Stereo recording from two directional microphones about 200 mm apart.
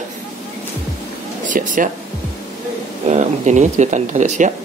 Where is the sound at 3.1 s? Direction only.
35° right (ahead or behind).